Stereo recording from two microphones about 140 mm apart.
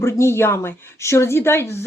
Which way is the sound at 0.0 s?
20° left (ahead or behind).